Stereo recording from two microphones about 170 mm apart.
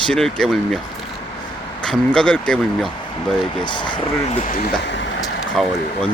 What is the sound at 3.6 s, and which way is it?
Speech, 25° left (ahead or behind).